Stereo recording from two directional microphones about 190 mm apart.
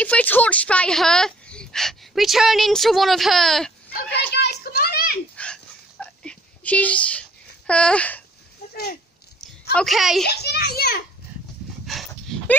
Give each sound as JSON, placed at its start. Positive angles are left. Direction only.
{"t": 0.0, "sound": "speech", "side_deg": 10}
{"t": 3.9, "sound": "children playing", "side_deg": 60}
{"t": 5.3, "sound": "a sound", "side_deg": 5}
{"t": 9.8, "sound": "speech", "side_deg": 0}
{"t": 10.2, "sound": "a child's voice", "side_deg": 60}
{"t": 11.8, "sound": "dog", "side_deg": 0}